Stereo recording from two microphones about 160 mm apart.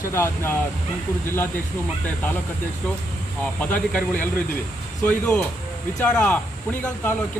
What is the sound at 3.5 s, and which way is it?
Speech, 10° left (ahead or behind).